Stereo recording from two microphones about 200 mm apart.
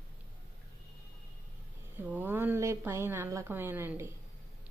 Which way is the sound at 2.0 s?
10° right (ahead or behind).